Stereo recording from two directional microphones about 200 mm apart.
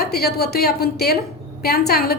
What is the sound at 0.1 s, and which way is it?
A woman's voice, 50° left (ahead or behind).